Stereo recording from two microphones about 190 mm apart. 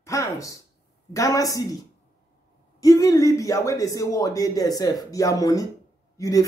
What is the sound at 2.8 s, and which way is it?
A man's voice, 15° left (ahead or behind).